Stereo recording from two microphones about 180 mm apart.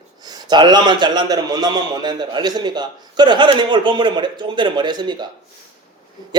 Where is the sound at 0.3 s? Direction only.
25° right (ahead or behind).